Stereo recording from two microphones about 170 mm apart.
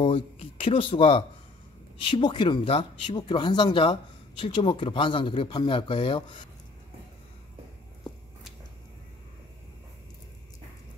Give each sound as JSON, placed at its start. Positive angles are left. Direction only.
{"t": 0.0, "sound": "speech", "side_deg": 35}